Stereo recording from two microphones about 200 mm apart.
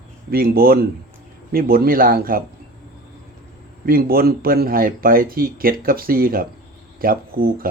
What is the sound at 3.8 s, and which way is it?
Speech, 50° right (ahead or behind).